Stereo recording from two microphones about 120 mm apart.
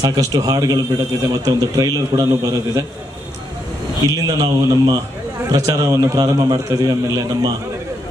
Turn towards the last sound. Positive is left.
turn(degrees=-30)  # may be behind; listen again after turning